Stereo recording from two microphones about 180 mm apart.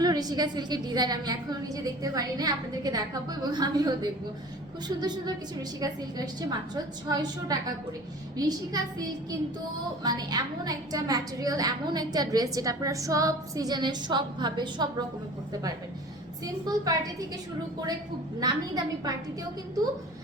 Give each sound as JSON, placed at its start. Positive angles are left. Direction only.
{"t": 0.0, "sound": "a woman's voice", "side_deg": -20}
{"t": 6.7, "sound": "a woman's voice", "side_deg": -20}
{"t": 16.6, "sound": "a woman's voice", "side_deg": -20}
{"t": 18.3, "sound": "a woman's voice", "side_deg": -20}